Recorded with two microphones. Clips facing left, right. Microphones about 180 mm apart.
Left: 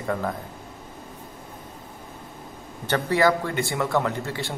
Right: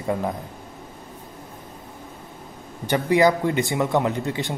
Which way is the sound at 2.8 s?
15° right (ahead or behind).